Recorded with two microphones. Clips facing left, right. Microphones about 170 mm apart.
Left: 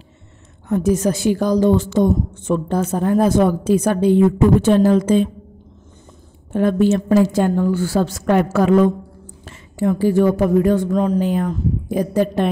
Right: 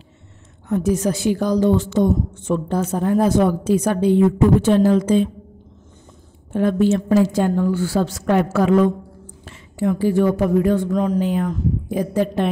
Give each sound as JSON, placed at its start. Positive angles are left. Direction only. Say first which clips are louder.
{"t": 0.7, "sound": "a woman's voice", "louder": "left 2 dB", "side_deg": 45}
{"t": 6.5, "sound": "a woman's voice", "louder": "left 1 dB", "side_deg": 50}